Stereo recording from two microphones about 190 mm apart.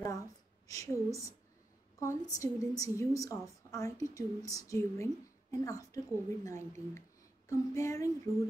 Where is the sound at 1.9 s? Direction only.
15° left (ahead or behind).